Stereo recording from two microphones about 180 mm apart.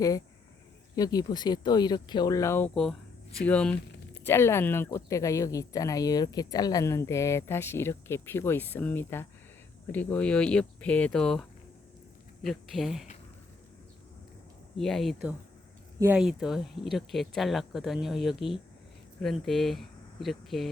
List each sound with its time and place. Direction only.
0.9 s speech: 20° left (ahead or behind); by 13.1 s centre (ahead or behind)
14.8 s speech: centre (ahead or behind)
16.0 s speech: 15° right (ahead or behind)
16.2 s speech: centre (ahead or behind)